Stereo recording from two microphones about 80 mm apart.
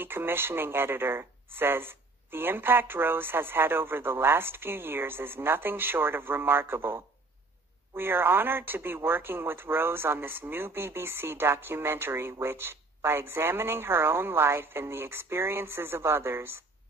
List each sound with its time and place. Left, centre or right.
0.0 s speech: right